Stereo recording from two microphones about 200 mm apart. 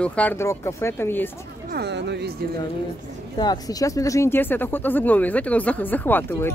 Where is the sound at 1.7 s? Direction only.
55° right (ahead or behind).